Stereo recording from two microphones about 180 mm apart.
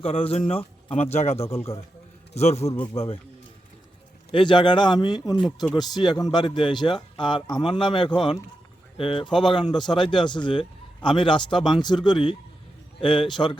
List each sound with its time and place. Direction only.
0.0 s speech: 35° left (ahead or behind)
4.3 s a man's voice: 25° left (ahead or behind)